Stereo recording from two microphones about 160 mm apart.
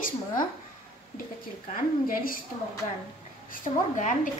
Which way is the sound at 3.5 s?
55° left (ahead or behind).